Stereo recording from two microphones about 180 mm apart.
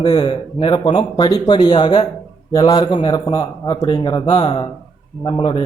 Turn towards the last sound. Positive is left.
turn(degrees=30)  # may be behind; listen again after turning